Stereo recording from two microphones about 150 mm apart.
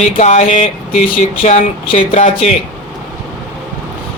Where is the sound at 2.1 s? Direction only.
45° left (ahead or behind).